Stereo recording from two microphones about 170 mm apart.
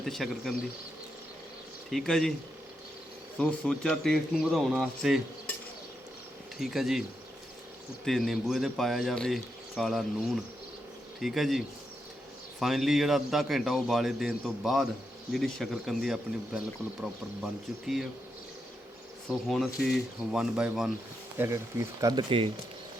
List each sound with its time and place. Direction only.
0.0 s speech: centre (ahead or behind)
1.9 s speech: centre (ahead or behind)
3.3 s speech: 5° left (ahead or behind)
6.6 s speech: centre (ahead or behind)
8.0 s speech: centre (ahead or behind)
19.3 s speech: centre (ahead or behind)
21.3 s speech: 15° right (ahead or behind)